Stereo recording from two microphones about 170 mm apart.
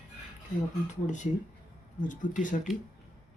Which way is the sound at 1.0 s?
45° left (ahead or behind).